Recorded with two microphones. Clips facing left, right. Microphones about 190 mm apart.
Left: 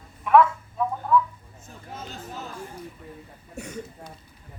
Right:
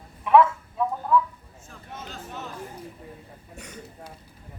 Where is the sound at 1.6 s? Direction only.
35° left (ahead or behind).